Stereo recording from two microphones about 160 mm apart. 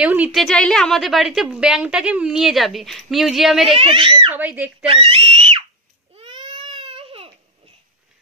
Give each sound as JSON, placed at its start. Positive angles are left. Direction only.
{"t": 0.0, "sound": "a woman's voice", "side_deg": -10}
{"t": 3.7, "sound": "a child's voice", "side_deg": -35}
{"t": 4.3, "sound": "speech", "side_deg": -10}
{"t": 4.8, "sound": "speech", "side_deg": -35}
{"t": 6.1, "sound": "baby cry", "side_deg": -30}